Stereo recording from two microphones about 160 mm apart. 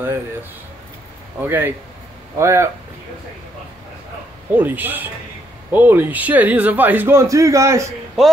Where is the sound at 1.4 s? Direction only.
15° right (ahead or behind).